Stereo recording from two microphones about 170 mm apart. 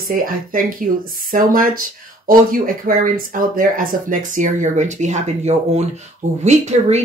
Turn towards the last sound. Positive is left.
turn(degrees=-40)  # may be behind; listen again after turning